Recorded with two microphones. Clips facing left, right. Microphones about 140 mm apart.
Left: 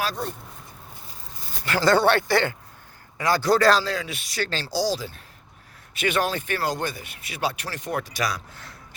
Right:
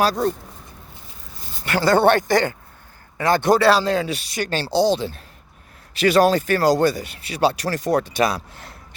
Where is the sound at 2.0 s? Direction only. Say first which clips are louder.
Right 4 dB; 50° right (ahead or behind).